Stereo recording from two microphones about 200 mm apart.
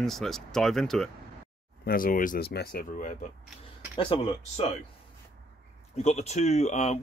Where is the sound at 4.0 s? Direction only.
25° left (ahead or behind).